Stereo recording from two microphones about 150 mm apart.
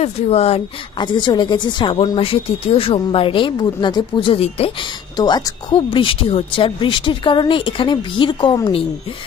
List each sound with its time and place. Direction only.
0.0 s a woman's voice: 45° left (ahead or behind)
5.1 s a woman's voice: 30° left (ahead or behind)